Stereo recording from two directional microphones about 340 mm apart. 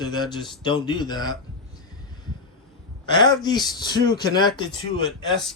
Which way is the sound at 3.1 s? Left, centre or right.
Centre.